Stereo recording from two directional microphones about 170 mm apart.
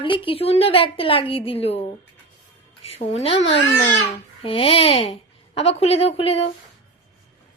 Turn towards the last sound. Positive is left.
turn(degrees=35)  # may be behind; listen again after turning